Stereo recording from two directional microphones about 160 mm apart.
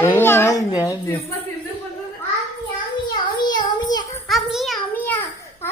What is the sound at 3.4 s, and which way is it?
Child singing, 25° left (ahead or behind).